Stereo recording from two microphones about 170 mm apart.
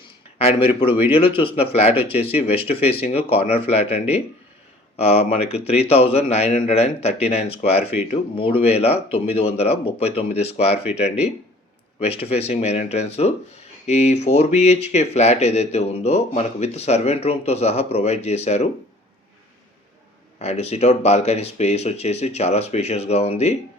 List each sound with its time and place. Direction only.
0.3 s speech: 35° left (ahead or behind)
11.9 s speech: 35° left (ahead or behind)
20.4 s speech: 40° left (ahead or behind)